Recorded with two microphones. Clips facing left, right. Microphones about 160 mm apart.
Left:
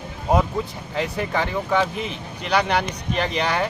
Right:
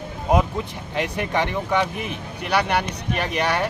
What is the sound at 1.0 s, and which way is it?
Speech, 20° right (ahead or behind).